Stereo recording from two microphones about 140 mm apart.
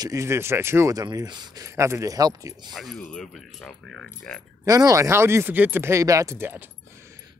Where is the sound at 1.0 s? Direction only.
30° right (ahead or behind).